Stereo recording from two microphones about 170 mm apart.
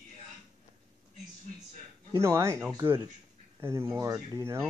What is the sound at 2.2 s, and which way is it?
Speech, 15° right (ahead or behind).